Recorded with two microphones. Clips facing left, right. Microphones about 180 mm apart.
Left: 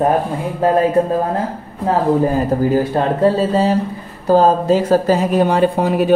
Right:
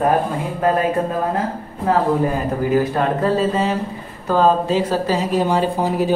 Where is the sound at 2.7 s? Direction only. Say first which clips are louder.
Left 2 dB; 30° left (ahead or behind); by 6.1 s 65° left (ahead or behind).